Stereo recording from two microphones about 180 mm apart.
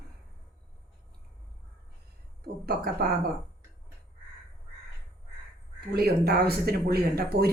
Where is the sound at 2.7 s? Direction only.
60° right (ahead or behind).